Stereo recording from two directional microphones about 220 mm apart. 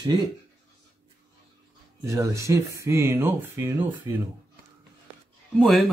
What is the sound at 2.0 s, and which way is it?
Speech, 15° right (ahead or behind).